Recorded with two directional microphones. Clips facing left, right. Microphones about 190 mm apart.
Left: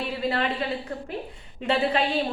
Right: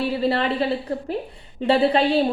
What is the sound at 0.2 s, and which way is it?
Speech, 35° right (ahead or behind).